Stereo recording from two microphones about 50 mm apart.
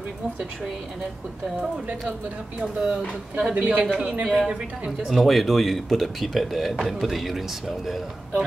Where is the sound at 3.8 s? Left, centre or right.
Right.